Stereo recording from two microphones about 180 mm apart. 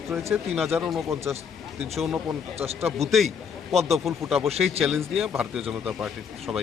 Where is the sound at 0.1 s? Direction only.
15° right (ahead or behind).